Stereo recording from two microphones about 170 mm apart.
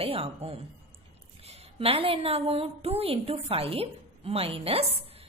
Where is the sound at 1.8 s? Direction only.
35° right (ahead or behind).